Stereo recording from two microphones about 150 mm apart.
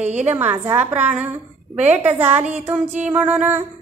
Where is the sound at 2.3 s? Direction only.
50° right (ahead or behind).